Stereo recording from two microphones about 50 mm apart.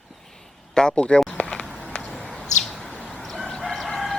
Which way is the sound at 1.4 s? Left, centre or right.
Centre.